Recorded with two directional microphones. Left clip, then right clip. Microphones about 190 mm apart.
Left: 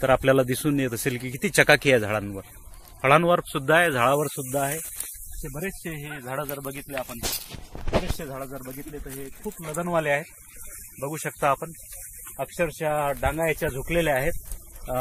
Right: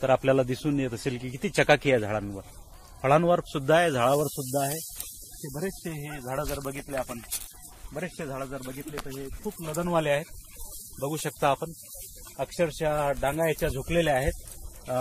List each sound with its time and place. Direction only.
0.0 s speech: 55° left (ahead or behind)
3.0 s speech: 25° left (ahead or behind)
5.5 s speech: 35° left (ahead or behind)
6.2 s speech: centre (ahead or behind)
9.8 s speech: 25° right (ahead or behind)
11.1 s speech: 35° right (ahead or behind)
12.4 s speech: centre (ahead or behind)
13.8 s speech: 15° left (ahead or behind)